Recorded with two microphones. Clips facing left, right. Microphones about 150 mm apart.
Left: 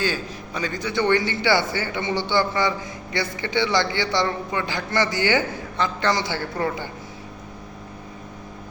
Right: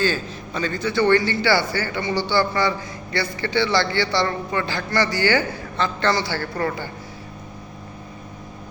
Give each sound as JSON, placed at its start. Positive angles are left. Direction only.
{"t": 0.0, "sound": "a man's voice", "side_deg": 15}